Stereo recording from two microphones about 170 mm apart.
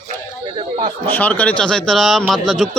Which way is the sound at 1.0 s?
10° left (ahead or behind).